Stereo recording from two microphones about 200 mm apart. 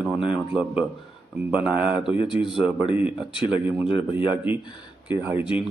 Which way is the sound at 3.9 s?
25° left (ahead or behind).